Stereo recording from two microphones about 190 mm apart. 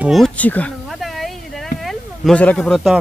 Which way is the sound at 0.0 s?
Centre (ahead or behind).